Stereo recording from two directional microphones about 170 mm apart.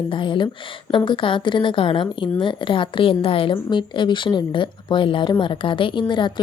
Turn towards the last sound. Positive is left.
turn(degrees=25)  # may be behind; listen again after turning